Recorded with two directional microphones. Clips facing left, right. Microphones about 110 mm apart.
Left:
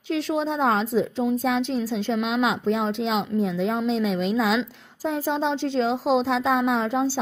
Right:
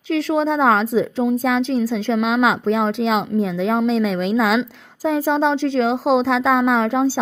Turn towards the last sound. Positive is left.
turn(degrees=-85)